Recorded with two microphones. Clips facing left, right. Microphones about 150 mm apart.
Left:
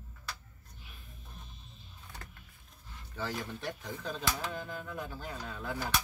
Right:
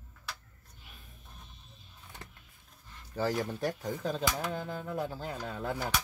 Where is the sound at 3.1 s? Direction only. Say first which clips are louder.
Right 7 dB; 40° right (ahead or behind).